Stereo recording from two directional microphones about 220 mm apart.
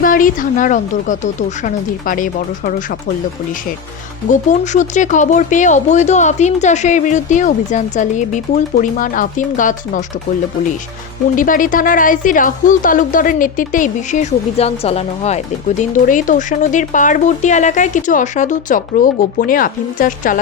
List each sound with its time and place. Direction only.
0.0 s speech: 40° left (ahead or behind)
4.3 s speech: 35° left (ahead or behind)
11.3 s speech: 40° left (ahead or behind)